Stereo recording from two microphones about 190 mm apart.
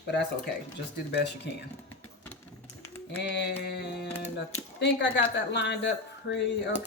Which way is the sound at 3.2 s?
60° left (ahead or behind).